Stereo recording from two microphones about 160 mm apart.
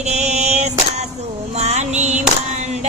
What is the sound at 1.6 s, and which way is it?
Music, 45° right (ahead or behind).